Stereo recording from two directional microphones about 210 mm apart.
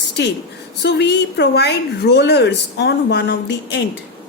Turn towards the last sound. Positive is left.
turn(degrees=55)  # may be behind; listen again after turning